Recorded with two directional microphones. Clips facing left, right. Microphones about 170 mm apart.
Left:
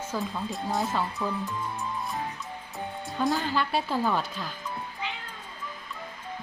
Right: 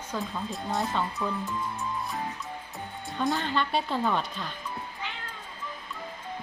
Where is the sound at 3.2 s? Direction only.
Centre (ahead or behind).